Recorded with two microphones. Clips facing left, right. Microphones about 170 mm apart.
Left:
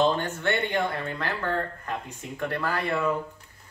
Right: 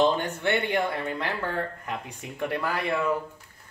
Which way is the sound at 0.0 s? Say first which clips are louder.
Right 1 dB; 15° right (ahead or behind).